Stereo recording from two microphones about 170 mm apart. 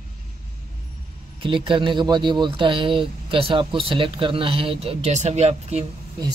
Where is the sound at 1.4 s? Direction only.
30° right (ahead or behind).